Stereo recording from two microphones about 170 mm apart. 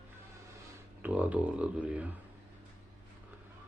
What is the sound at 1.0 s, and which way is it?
Speech, 10° right (ahead or behind).